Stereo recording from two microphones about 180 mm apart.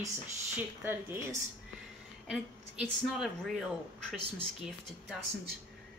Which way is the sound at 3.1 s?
Centre (ahead or behind).